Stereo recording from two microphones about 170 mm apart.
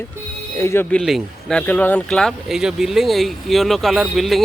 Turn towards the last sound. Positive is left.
turn(degrees=0)  # may be behind; listen again after turning